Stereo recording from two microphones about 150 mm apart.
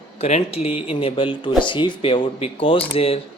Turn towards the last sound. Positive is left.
turn(degrees=40)  # may be behind; listen again after turning